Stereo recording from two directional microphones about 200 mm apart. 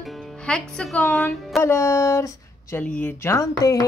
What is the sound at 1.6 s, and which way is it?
Speech, 15° left (ahead or behind).